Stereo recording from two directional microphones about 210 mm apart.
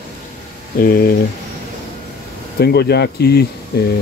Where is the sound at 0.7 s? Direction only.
45° left (ahead or behind).